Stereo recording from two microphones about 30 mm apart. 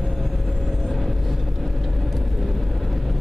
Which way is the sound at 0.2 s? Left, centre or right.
Centre.